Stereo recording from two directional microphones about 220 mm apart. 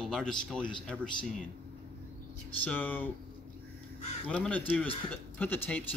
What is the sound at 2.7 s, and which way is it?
Speech, 5° left (ahead or behind).